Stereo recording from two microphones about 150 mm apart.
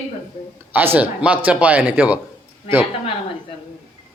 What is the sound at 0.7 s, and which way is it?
Speech, 10° right (ahead or behind).